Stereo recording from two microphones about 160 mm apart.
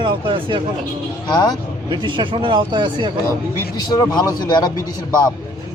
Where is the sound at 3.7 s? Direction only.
25° left (ahead or behind).